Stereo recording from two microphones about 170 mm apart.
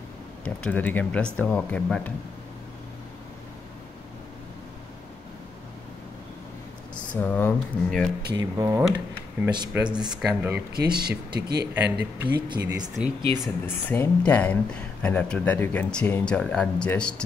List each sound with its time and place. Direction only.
0.4 s speech: 10° left (ahead or behind)
7.1 s speech: 10° left (ahead or behind)
8.4 s speech: 15° right (ahead or behind)
9.8 s speech: 5° right (ahead or behind)
10.7 s speech: 65° right (ahead or behind)
11.7 s speech: 10° right (ahead or behind)
13.3 s speech: 15° left (ahead or behind)